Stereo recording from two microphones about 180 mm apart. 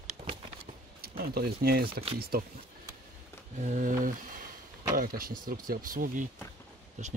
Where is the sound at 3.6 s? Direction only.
45° right (ahead or behind).